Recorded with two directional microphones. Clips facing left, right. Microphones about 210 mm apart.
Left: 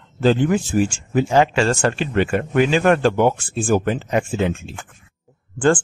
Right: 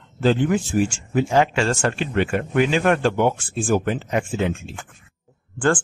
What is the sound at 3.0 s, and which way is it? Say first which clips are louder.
Speech: left 3 dB; 40° left (ahead or behind).